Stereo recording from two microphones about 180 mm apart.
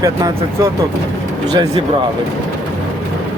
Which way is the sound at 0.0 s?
20° right (ahead or behind).